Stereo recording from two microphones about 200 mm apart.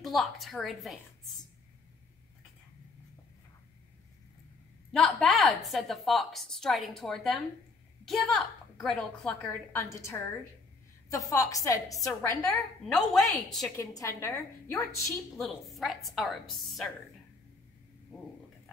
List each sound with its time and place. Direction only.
0.0 s a woman's voice: centre (ahead or behind)
4.9 s a woman's voice: centre (ahead or behind)
13.7 s a woman's voice: 15° left (ahead or behind)
15.3 s a woman's voice: centre (ahead or behind)